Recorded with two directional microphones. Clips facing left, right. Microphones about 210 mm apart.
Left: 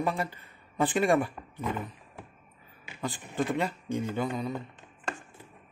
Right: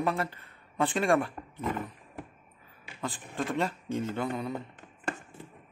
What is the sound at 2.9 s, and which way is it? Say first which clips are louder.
A man's voice: left 1 dB; centre (ahead or behind).